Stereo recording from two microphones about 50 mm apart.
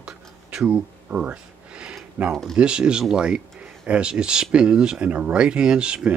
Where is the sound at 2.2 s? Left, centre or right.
Right.